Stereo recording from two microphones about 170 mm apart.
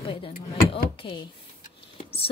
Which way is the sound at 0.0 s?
30° left (ahead or behind).